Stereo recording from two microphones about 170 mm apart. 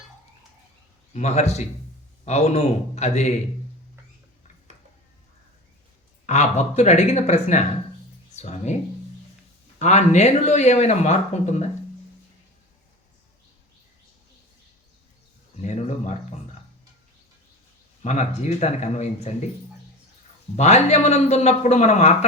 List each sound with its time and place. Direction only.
1.1 s a man's voice: 40° left (ahead or behind)
6.2 s a man's voice: 40° left (ahead or behind)
9.7 s speech: 40° left (ahead or behind)
15.6 s a sound: 40° left (ahead or behind)
18.0 s a man's voice: 40° left (ahead or behind)
20.6 s a man's voice: 40° left (ahead or behind)